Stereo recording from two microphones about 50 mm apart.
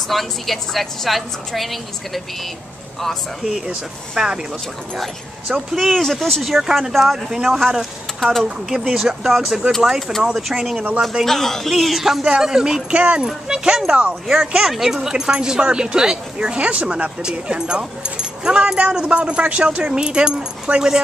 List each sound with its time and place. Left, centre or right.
0.1 s speech: centre
3.4 s speech: centre
4.9 s speech: centre
8.6 s speech: centre
11.2 s speech: centre
11.7 s speech: centre
12.9 s speech: right
18.8 s speech: right